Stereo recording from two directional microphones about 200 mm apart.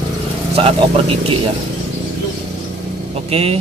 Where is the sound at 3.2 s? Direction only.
30° right (ahead or behind).